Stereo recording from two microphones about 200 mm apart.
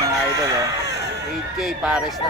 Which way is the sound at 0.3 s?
15° right (ahead or behind).